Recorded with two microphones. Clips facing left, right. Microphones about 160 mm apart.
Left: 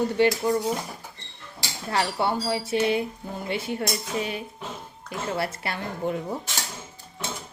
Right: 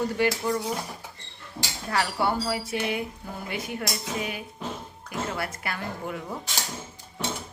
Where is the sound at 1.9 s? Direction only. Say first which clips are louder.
Left 1 dB; 25° left (ahead or behind).